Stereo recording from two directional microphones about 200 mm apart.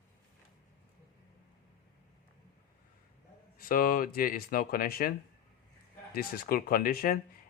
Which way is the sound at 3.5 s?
45° left (ahead or behind).